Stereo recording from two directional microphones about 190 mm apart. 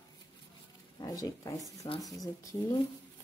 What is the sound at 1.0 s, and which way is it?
A woman's voice, 20° left (ahead or behind).